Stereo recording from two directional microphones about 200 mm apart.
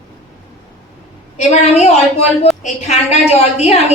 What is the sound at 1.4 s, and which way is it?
A woman's voice, 35° left (ahead or behind).